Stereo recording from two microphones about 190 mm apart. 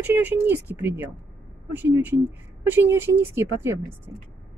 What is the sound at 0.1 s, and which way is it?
Speech, 10° right (ahead or behind).